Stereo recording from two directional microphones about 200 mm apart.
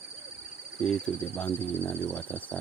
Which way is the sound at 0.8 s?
5° left (ahead or behind).